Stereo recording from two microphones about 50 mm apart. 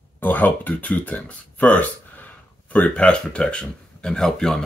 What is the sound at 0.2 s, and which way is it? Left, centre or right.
Speech, left.